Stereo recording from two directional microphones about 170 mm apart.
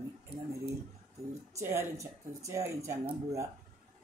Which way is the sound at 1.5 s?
15° right (ahead or behind).